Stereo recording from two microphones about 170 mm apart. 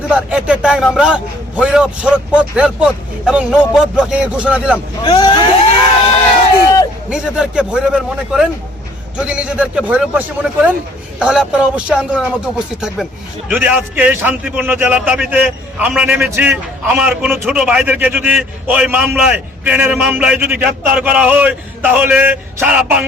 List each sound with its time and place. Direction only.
0.1 s a man's voice: 5° right (ahead or behind)
5.0 s speech: 25° left (ahead or behind)
7.1 s a man's voice: 5° right (ahead or behind)